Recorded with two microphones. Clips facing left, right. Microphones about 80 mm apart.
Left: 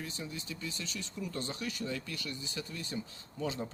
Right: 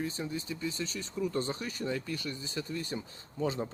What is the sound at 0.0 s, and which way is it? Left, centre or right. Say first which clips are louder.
Speech: right 6 dB; right.